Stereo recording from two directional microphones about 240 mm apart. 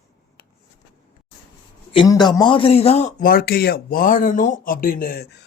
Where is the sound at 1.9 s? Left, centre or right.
Centre.